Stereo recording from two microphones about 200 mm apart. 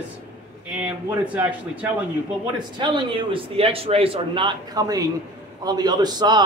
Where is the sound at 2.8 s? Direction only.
25° right (ahead or behind).